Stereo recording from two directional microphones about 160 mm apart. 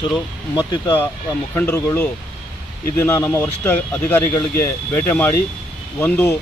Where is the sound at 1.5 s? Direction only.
15° left (ahead or behind).